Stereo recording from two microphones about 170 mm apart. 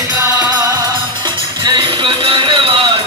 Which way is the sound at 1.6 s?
25° right (ahead or behind).